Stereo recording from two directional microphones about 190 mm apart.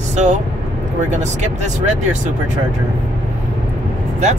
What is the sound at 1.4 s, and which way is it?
Speech, 40° right (ahead or behind).